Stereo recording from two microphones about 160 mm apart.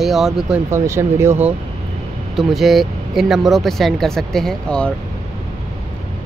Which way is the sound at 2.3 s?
Centre (ahead or behind).